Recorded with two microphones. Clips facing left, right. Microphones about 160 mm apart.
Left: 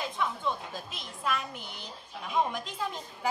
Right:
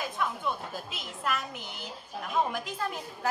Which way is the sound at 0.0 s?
5° right (ahead or behind).